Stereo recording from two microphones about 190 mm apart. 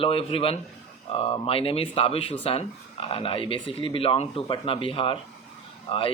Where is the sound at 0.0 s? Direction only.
30° left (ahead or behind).